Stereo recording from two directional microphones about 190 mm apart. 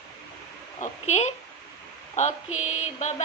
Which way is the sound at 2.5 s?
90° left.